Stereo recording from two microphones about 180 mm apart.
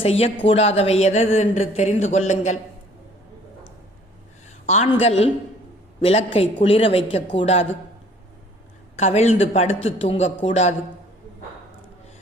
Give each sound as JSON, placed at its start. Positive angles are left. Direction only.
{"t": 0.0, "sound": "a woman's voice", "side_deg": 35}
{"t": 4.6, "sound": "a man's voice", "side_deg": 40}
{"t": 9.0, "sound": "a woman's voice", "side_deg": 35}